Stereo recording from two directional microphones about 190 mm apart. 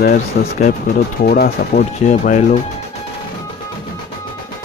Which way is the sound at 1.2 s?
50° left (ahead or behind).